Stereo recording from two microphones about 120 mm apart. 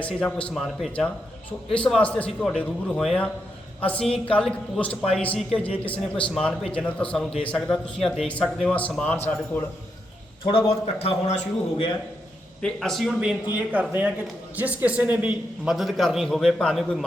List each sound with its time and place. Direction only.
0.0 s a man's voice: 10° left (ahead or behind)
10.4 s a man's voice: 55° left (ahead or behind)
12.6 s a man's voice: 5° left (ahead or behind)